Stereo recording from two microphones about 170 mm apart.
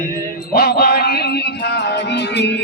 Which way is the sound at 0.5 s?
70° left (ahead or behind).